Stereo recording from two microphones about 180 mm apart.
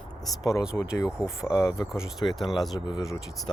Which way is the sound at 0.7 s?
10° left (ahead or behind).